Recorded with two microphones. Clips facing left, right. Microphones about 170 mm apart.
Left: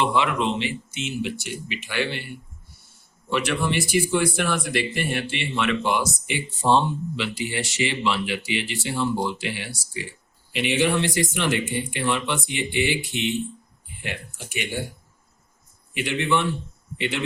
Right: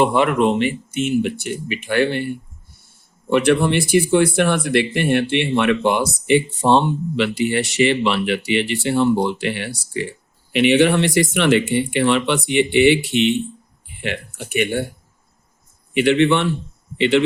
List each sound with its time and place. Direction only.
0.0 s speech: 50° right (ahead or behind)
16.0 s speech: 70° right (ahead or behind)